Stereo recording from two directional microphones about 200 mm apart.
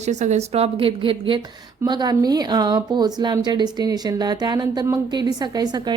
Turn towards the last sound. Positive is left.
turn(degrees=-20)  # may be behind; listen again after turning